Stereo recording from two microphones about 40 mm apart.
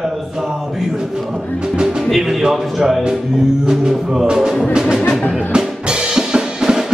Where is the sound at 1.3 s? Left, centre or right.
Centre.